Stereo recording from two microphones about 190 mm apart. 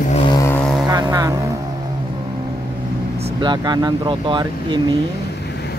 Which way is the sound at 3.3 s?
25° right (ahead or behind).